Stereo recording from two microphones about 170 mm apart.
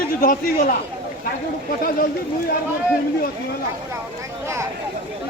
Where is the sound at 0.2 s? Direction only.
55° left (ahead or behind).